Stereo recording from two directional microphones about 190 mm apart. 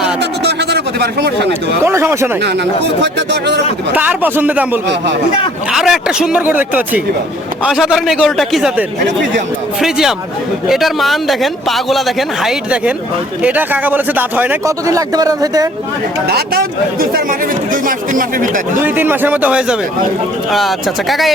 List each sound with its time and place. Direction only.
0.2 s a sound: 60° right (ahead or behind)
1.8 s speech: 15° right (ahead or behind)
3.9 s a man's voice: 10° right (ahead or behind)
9.8 s a man's voice: centre (ahead or behind); by 15.7 s 20° right (ahead or behind)
16.3 s speech: 55° right (ahead or behind)
18.8 s a man's voice: 10° right (ahead or behind)